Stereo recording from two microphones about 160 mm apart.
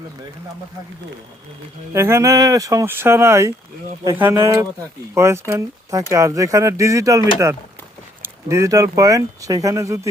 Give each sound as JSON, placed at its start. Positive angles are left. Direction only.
{"t": 1.9, "sound": "speech", "side_deg": -15}